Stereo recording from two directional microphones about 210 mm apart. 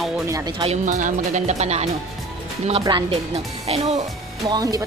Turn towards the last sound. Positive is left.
turn(degrees=-15)  # may be behind; listen again after turning